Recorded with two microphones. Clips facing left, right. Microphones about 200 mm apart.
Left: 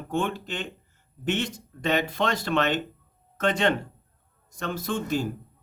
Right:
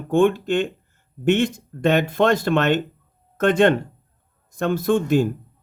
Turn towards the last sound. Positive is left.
turn(degrees=-55)  # may be behind; listen again after turning